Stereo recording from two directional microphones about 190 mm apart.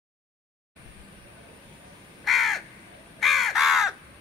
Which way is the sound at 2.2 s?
Centre (ahead or behind).